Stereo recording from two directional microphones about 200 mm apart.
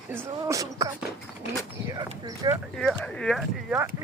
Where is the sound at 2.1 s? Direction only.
20° right (ahead or behind).